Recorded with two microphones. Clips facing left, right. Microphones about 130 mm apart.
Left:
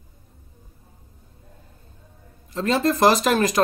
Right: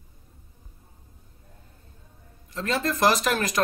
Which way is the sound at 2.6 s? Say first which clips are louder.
Left 6 dB; 25° left (ahead or behind).